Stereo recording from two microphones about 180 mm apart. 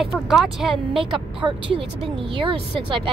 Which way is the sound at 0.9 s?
30° right (ahead or behind).